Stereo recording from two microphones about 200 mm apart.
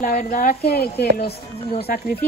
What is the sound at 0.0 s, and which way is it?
Speech, 40° left (ahead or behind).